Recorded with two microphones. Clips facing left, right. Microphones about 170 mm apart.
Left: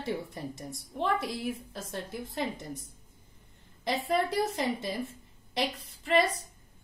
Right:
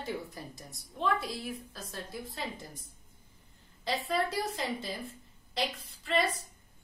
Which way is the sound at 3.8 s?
20° left (ahead or behind).